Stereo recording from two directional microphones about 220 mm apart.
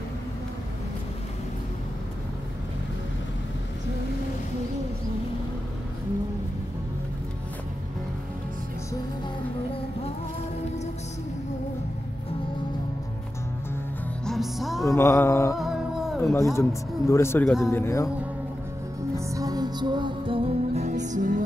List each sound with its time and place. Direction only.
14.2 s music: centre (ahead or behind)
14.9 s mantra: 10° left (ahead or behind)
15.5 s humming: centre (ahead or behind)
16.2 s speech: 15° left (ahead or behind)
19.1 s music: 15° right (ahead or behind); by 21.4 s 35° right (ahead or behind)